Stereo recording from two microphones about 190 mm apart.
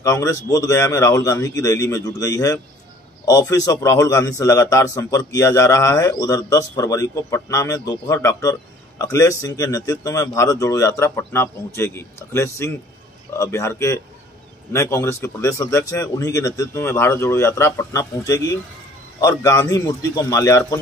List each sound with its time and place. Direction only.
0.0 s a man's voice: 15° left (ahead or behind)